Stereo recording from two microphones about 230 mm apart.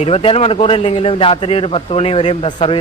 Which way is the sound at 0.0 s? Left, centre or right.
Left.